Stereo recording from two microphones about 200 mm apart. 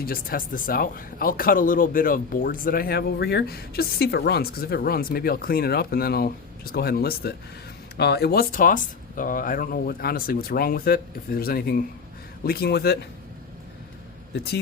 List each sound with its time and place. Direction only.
0.0 s speech: 45° left (ahead or behind)